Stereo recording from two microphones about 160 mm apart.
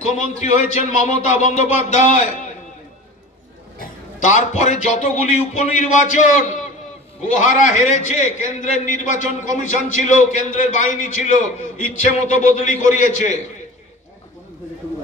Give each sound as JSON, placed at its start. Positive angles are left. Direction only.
{"t": 0.1, "sound": "a man's voice", "side_deg": 50}
{"t": 3.8, "sound": "a man's voice", "side_deg": 50}
{"t": 12.3, "sound": "a man's voice", "side_deg": 50}